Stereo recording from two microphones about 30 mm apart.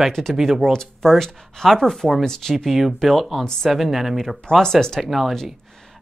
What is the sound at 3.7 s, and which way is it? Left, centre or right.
Speech, centre.